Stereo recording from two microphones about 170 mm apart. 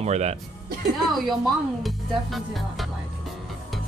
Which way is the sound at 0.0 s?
40° right (ahead or behind).